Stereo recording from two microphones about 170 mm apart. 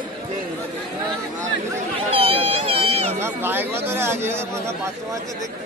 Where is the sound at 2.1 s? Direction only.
35° right (ahead or behind).